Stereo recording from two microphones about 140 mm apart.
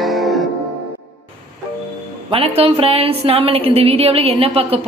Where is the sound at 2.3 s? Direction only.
45° right (ahead or behind).